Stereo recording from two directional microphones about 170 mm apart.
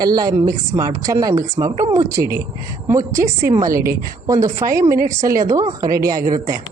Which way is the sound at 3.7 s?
60° right (ahead or behind).